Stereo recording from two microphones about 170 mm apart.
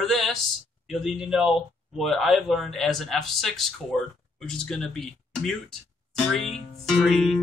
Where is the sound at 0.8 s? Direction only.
Centre (ahead or behind).